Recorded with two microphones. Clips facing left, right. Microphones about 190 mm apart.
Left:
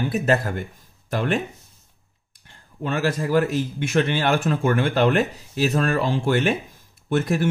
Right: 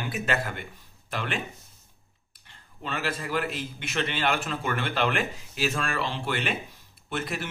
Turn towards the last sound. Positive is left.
turn(degrees=50)  # may be behind; listen again after turning